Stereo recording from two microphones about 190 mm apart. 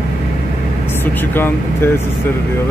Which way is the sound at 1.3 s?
10° left (ahead or behind).